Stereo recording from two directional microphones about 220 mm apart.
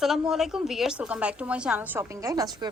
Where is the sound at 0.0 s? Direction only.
Centre (ahead or behind).